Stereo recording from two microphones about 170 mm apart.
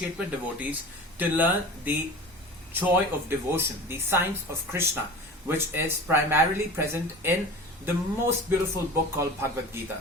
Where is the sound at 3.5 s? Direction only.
15° right (ahead or behind).